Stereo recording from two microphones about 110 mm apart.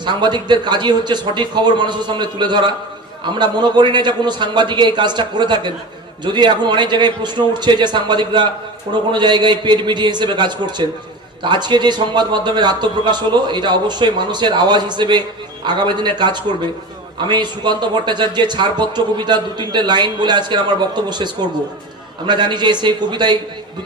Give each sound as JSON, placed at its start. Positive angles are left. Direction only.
{"t": 0.0, "sound": "a man's voice", "side_deg": -45}